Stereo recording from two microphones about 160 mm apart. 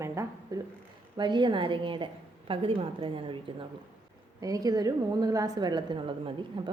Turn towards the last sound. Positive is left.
turn(degrees=-30)  # may be behind; listen again after turning